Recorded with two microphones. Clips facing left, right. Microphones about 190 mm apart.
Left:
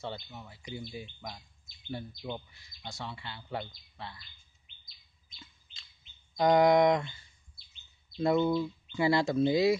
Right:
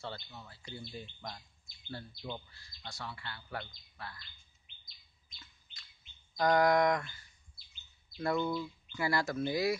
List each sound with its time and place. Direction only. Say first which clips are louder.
0.0 s speech: left 4 dB; 20° left (ahead or behind)
5.4 s chirp: left 6 dB; 25° left (ahead or behind)
6.3 s speech: left 4 dB; 20° left (ahead or behind)
7.6 s chirp: left 1 dB; centre (ahead or behind)
8.2 s speech: left 6 dB; 20° left (ahead or behind)